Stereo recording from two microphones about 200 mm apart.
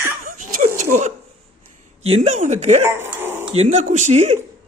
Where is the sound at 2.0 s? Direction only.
30° right (ahead or behind).